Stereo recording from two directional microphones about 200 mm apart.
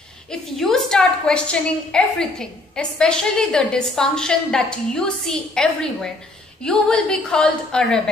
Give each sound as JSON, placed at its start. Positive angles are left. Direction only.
{"t": 0.3, "sound": "a woman's voice", "side_deg": 5}